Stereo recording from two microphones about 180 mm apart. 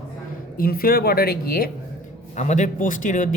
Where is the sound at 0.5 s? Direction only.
55° left (ahead or behind).